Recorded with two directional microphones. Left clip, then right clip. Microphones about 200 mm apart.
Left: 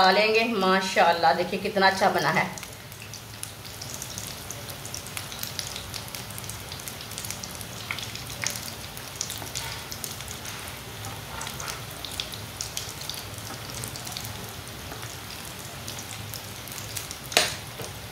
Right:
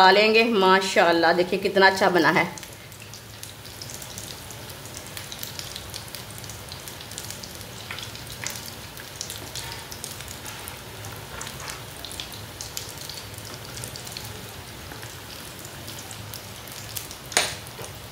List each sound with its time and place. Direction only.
0.0 s a woman's voice: 50° right (ahead or behind)